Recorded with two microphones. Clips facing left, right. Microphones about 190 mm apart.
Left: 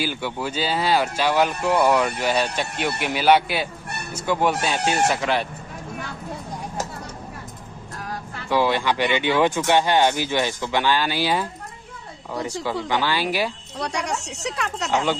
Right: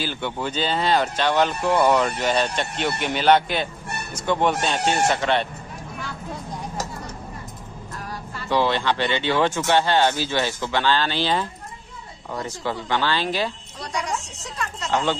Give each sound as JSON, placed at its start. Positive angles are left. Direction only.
{"t": 0.0, "sound": "speech", "side_deg": 10}
{"t": 8.1, "sound": "music", "side_deg": 60}
{"t": 8.5, "sound": "speech", "side_deg": 10}
{"t": 13.7, "sound": "speech", "side_deg": 70}
{"t": 14.9, "sound": "speech", "side_deg": 10}